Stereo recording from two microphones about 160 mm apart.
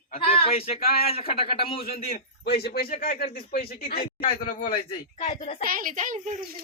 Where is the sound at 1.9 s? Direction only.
65° left (ahead or behind).